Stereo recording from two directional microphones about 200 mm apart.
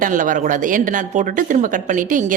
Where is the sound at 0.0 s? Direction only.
40° right (ahead or behind).